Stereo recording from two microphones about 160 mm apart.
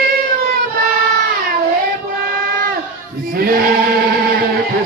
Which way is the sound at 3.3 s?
70° right (ahead or behind).